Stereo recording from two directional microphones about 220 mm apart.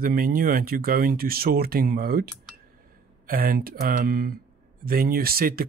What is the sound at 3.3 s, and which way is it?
Speech, 40° right (ahead or behind).